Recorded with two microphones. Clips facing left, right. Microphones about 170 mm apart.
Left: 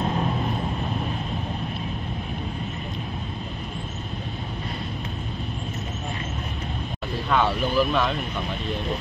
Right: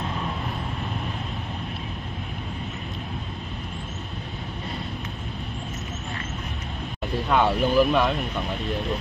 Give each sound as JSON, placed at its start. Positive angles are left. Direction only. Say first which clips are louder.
{"t": 7.2, "sound": "speech", "louder": "right 2 dB", "side_deg": -15}